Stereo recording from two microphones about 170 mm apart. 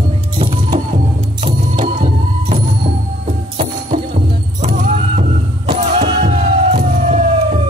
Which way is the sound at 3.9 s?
45° right (ahead or behind).